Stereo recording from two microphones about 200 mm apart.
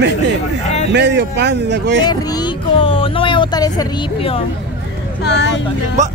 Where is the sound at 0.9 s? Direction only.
60° right (ahead or behind).